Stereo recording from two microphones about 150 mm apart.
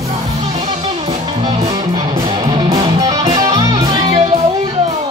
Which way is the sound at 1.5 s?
30° right (ahead or behind).